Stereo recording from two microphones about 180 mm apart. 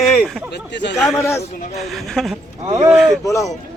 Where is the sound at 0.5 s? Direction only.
75° left (ahead or behind).